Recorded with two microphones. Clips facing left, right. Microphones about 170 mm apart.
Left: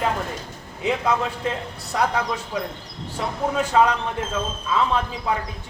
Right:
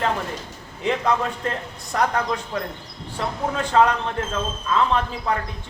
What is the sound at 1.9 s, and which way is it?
A man's voice, 5° left (ahead or behind).